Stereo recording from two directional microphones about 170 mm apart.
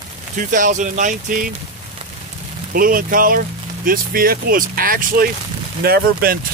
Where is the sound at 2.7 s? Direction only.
55° right (ahead or behind).